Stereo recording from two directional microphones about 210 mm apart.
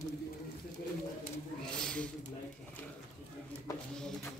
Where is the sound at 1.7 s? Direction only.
5° left (ahead or behind).